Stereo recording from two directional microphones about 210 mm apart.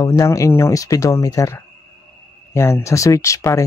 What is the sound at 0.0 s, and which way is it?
Speech, 15° left (ahead or behind).